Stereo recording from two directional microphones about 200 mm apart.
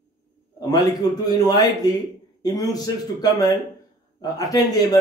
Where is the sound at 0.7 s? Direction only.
20° left (ahead or behind).